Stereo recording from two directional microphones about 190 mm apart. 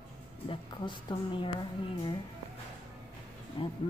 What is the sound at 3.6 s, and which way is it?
Speech, 25° left (ahead or behind).